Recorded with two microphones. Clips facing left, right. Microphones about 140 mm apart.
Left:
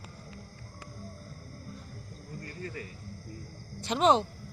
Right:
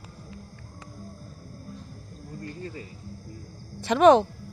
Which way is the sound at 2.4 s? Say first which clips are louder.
Right 3 dB; 20° right (ahead or behind).